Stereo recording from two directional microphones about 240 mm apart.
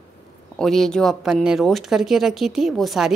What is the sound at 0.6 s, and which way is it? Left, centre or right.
Speech, centre.